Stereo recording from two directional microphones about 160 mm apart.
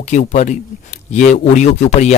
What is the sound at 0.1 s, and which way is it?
Speech, 50° left (ahead or behind).